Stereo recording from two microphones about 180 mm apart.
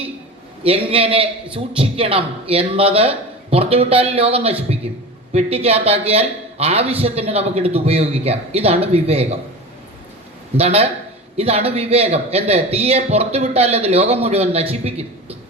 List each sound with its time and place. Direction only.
0.6 s a man's voice: 30° right (ahead or behind)
10.6 s a man's voice: 35° right (ahead or behind)